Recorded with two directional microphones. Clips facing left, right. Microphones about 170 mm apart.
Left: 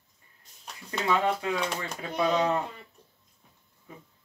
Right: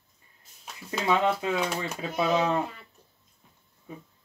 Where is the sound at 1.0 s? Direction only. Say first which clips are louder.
Right 2 dB; 20° right (ahead or behind).